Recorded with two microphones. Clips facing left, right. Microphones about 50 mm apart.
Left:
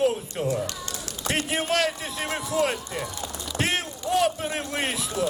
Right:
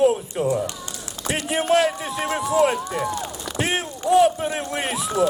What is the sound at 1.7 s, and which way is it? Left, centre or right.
Speech, centre.